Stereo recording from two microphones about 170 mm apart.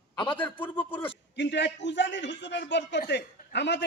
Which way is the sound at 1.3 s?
90° left.